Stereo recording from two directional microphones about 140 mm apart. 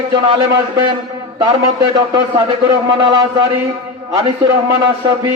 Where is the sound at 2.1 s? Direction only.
35° right (ahead or behind).